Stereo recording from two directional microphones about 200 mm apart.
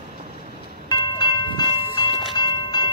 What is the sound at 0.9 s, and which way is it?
Train, 20° left (ahead or behind).